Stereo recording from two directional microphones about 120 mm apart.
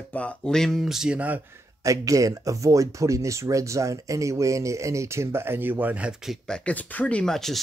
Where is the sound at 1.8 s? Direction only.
25° right (ahead or behind); by 6.3 s 10° right (ahead or behind).